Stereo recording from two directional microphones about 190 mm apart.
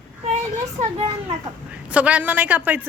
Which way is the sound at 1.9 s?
5° right (ahead or behind).